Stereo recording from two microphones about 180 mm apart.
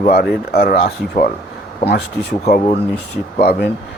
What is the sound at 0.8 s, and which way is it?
Speech, 45° left (ahead or behind).